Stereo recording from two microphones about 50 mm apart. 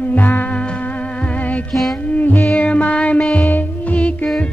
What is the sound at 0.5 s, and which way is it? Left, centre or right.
Music, left.